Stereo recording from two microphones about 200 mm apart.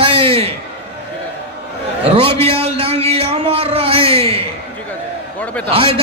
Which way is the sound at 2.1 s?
30° right (ahead or behind).